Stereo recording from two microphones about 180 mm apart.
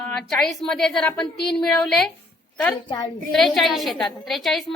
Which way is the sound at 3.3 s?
Centre (ahead or behind).